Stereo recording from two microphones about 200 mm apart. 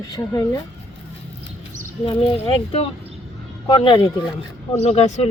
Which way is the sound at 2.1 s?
30° left (ahead or behind).